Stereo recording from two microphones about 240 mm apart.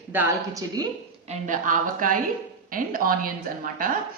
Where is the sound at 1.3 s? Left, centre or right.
Right.